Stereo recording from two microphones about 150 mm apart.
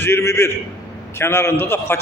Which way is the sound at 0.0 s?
20° left (ahead or behind).